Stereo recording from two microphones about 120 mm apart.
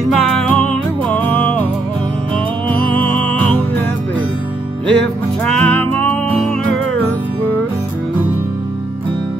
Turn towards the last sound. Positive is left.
turn(degrees=10)  # may be behind; listen again after turning